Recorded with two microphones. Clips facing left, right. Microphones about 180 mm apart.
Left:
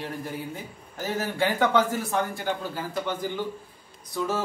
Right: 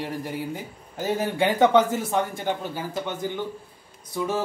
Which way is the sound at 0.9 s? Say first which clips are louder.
Right 3 dB; 15° right (ahead or behind).